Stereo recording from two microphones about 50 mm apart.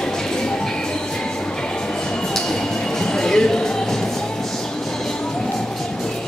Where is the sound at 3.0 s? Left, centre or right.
Centre.